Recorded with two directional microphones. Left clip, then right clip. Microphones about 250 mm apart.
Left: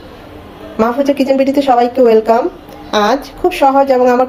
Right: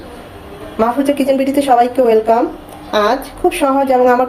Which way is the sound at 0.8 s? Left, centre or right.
Centre.